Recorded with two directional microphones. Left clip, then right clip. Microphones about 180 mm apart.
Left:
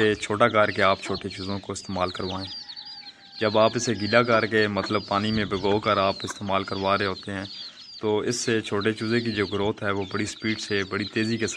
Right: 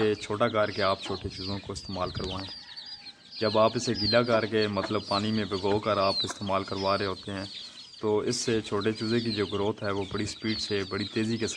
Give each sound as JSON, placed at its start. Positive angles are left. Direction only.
{"t": 0.0, "sound": "speech", "side_deg": 25}
{"t": 3.3, "sound": "speech", "side_deg": 15}